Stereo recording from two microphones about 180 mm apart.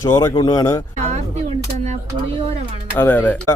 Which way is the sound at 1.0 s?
40° right (ahead or behind).